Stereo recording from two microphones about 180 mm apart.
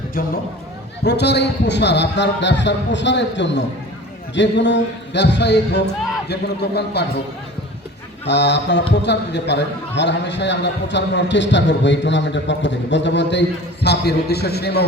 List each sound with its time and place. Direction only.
0.2 s a man's voice: 50° left (ahead or behind)
1.0 s speech: 70° left (ahead or behind)
8.2 s a man's voice: 75° left (ahead or behind)
13.8 s a man's voice: 65° left (ahead or behind)